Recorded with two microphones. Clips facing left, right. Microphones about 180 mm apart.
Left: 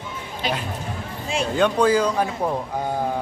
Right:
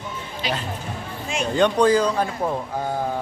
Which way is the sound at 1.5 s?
5° left (ahead or behind).